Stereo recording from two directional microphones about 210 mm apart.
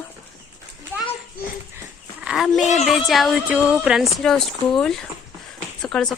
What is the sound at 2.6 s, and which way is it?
Speech, 35° left (ahead or behind).